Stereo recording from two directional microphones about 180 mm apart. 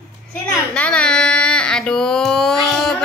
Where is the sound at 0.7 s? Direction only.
5° left (ahead or behind).